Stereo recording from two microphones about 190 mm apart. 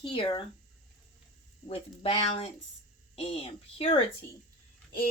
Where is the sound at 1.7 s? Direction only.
30° left (ahead or behind).